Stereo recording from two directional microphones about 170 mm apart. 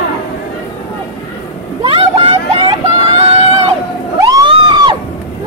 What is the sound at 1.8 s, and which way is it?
Vehicle, 30° right (ahead or behind).